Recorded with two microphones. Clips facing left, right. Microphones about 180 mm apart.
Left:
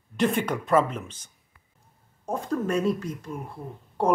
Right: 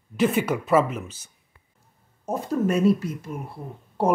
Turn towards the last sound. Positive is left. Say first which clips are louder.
# right 2 dB
turn(degrees=-10)  # may be behind; listen again after turning